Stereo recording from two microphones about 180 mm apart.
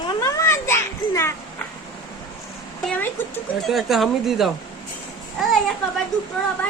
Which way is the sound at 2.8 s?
10° left (ahead or behind).